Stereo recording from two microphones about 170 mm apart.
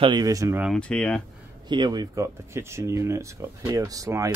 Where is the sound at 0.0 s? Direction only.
25° right (ahead or behind).